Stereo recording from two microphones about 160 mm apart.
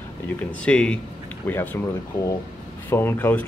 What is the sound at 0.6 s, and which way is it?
Speech, 5° left (ahead or behind).